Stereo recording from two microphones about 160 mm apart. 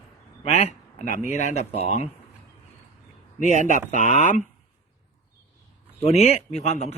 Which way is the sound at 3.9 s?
50° left (ahead or behind).